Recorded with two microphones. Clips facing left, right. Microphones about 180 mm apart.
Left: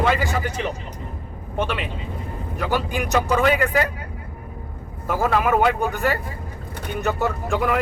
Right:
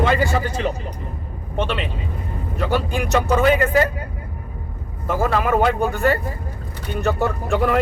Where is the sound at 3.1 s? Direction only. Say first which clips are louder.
Right 2 dB; centre (ahead or behind).